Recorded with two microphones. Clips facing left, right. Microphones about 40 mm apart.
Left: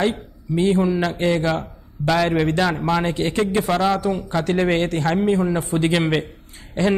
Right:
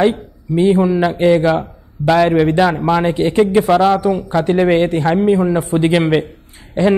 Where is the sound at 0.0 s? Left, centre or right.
Centre.